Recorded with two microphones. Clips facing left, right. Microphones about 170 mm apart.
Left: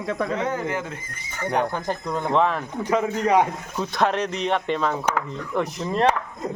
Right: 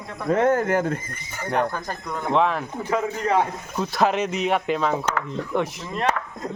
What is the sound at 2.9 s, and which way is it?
Speech, 15° left (ahead or behind).